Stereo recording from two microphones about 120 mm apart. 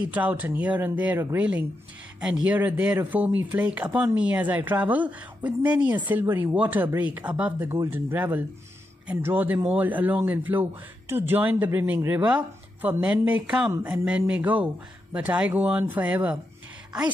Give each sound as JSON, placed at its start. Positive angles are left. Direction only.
{"t": 0.0, "sound": "speech", "side_deg": -15}